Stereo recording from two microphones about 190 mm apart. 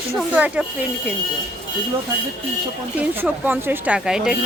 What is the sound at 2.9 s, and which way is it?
Speech, 10° right (ahead or behind).